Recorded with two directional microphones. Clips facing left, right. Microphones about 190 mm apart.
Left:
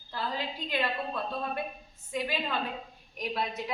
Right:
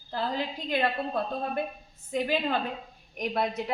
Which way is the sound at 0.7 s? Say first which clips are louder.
Right 4 dB; 45° right (ahead or behind).